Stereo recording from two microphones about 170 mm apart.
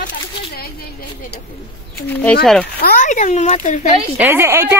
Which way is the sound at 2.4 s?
Centre (ahead or behind).